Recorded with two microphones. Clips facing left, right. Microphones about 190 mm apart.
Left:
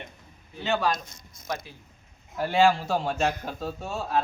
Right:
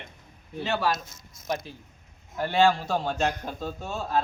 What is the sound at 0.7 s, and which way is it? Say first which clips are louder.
A man's voice: left 1 dB; 5° right (ahead or behind).